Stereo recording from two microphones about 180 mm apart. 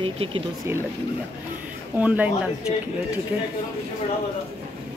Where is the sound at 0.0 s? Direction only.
30° right (ahead or behind).